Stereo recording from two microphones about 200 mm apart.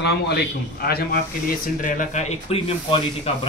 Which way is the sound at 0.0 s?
50° left (ahead or behind).